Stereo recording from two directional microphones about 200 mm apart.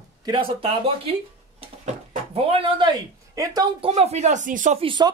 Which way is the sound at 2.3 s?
30° right (ahead or behind).